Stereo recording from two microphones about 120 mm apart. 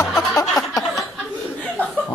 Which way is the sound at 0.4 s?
30° left (ahead or behind).